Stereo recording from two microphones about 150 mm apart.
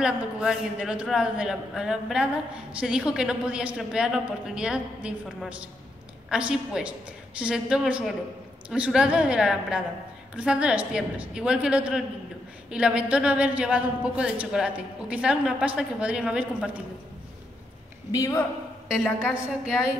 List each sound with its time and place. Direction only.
0.0 s a man's voice: 5° right (ahead or behind)
18.1 s a woman's voice: 25° left (ahead or behind)
18.9 s a man's voice: 5° right (ahead or behind)